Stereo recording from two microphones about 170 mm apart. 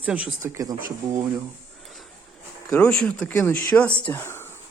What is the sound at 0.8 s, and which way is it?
Speech, 55° right (ahead or behind).